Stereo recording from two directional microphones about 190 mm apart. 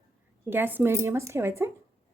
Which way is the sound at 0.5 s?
10° right (ahead or behind).